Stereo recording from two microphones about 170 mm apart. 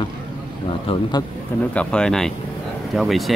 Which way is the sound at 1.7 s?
5° left (ahead or behind).